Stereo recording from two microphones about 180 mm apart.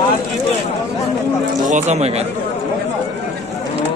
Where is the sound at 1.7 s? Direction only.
40° right (ahead or behind).